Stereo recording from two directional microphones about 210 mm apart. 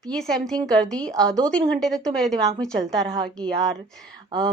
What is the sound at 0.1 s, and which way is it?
A woman's voice, centre (ahead or behind).